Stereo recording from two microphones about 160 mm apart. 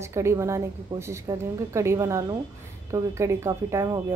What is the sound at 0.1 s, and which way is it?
A woman's voice, 15° right (ahead or behind).